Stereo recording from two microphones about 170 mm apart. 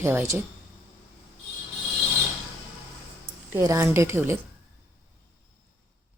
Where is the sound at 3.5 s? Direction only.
20° right (ahead or behind).